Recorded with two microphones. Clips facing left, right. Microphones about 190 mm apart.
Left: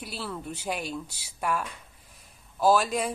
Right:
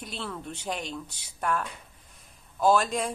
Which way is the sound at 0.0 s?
5° left (ahead or behind).